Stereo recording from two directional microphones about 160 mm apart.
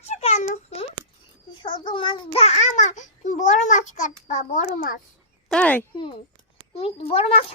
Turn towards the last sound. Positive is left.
turn(degrees=40)  # may be behind; listen again after turning